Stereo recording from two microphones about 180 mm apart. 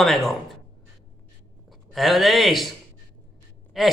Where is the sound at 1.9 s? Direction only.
Centre (ahead or behind).